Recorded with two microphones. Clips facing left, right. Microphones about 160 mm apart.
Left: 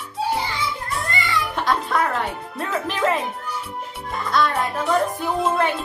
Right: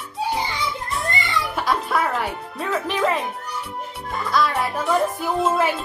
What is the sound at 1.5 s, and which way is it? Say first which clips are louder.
Speech: even; centre (ahead or behind).